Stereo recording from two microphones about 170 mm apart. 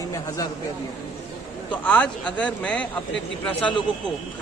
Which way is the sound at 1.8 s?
5° left (ahead or behind).